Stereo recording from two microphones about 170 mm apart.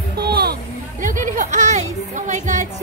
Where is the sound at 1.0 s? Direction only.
50° right (ahead or behind).